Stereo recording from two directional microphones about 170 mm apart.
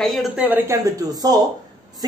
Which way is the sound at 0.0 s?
Centre (ahead or behind).